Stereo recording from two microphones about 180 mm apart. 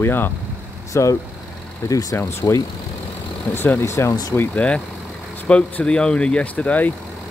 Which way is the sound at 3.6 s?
15° left (ahead or behind).